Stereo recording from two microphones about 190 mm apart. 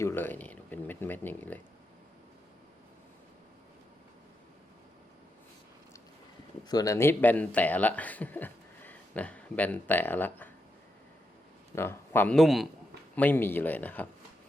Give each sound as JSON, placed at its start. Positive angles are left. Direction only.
{"t": 0.0, "sound": "speech", "side_deg": 10}
{"t": 6.7, "sound": "speech", "side_deg": 20}
{"t": 11.7, "sound": "speech", "side_deg": 15}